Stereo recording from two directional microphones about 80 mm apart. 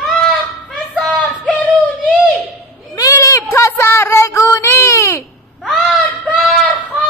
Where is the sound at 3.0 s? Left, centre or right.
Left.